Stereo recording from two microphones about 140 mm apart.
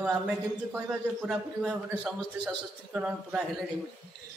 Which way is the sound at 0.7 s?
5° right (ahead or behind).